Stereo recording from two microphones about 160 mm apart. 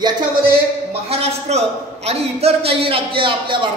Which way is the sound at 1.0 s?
40° right (ahead or behind).